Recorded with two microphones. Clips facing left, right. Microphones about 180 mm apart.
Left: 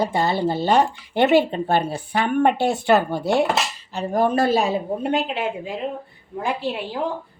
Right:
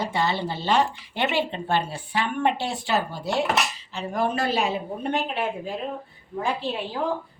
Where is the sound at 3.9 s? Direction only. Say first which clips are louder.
Left 9 dB; 40° left (ahead or behind).